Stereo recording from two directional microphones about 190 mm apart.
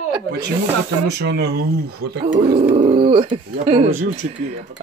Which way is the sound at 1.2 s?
60° right (ahead or behind).